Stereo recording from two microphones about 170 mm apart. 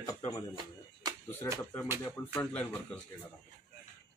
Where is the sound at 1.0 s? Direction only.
25° right (ahead or behind).